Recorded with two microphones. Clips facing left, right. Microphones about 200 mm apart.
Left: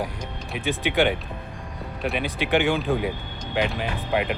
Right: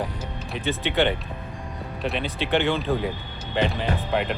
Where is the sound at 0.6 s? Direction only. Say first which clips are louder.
Left 1 dB; 15° left (ahead or behind).